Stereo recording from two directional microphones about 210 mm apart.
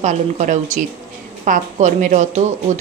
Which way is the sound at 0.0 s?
35° right (ahead or behind).